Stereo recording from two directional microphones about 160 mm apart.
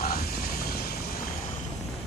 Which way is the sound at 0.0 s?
70° left (ahead or behind).